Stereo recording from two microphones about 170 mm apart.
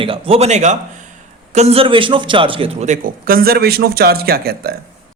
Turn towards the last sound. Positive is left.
turn(degrees=-65)  # may be behind; listen again after turning